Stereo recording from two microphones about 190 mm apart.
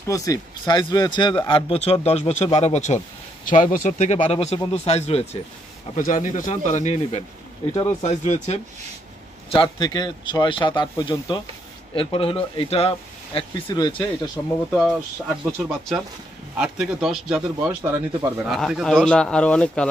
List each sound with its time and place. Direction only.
0.0 s speech: 20° left (ahead or behind); by 8.5 s 40° left (ahead or behind)
9.5 s speech: 25° left (ahead or behind)
14.7 s speech: centre (ahead or behind)
16.5 s speech: 5° right (ahead or behind)